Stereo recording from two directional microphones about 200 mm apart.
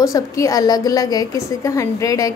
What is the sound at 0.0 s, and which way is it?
A woman's voice, 15° left (ahead or behind).